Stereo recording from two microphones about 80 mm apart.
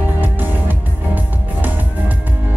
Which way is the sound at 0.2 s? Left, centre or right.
Right.